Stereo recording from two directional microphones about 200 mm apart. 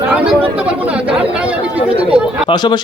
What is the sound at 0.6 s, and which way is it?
Chatter, 5° right (ahead or behind).